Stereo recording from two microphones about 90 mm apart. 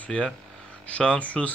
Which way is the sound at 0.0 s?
10° left (ahead or behind).